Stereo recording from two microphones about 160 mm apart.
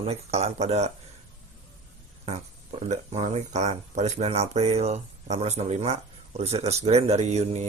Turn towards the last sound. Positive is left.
turn(degrees=-45)  # may be behind; listen again after turning